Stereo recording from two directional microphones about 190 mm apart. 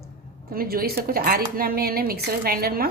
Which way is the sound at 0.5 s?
50° right (ahead or behind).